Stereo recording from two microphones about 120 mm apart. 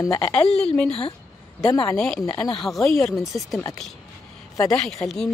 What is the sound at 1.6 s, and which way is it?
Speech, 30° left (ahead or behind).